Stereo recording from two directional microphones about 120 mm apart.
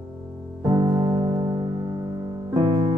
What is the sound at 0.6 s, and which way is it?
Music, 30° right (ahead or behind).